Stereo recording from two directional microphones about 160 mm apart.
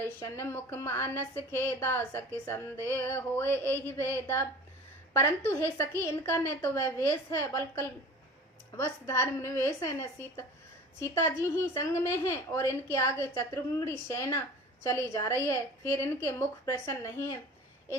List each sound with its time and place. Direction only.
0.0 s a woman's voice: 15° left (ahead or behind)